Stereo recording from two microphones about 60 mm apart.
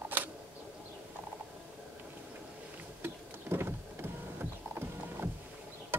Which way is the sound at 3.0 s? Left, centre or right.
Right.